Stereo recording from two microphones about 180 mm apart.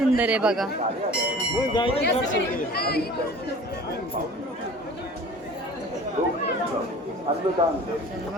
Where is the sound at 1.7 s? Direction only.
30° left (ahead or behind).